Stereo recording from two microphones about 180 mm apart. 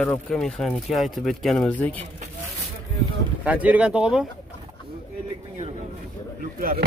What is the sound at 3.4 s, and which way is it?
Speech, 10° right (ahead or behind).